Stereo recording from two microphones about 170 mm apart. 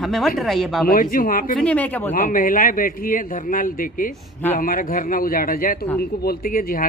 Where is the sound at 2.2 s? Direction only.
55° left (ahead or behind).